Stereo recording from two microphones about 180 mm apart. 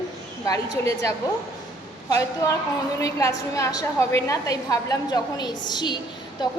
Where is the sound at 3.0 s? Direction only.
20° left (ahead or behind).